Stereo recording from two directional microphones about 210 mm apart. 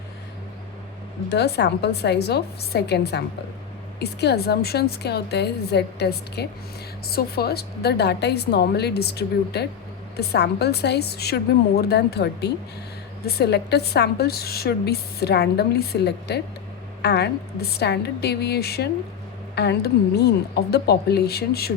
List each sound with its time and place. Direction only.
1.3 s a woman's voice: 50° left (ahead or behind)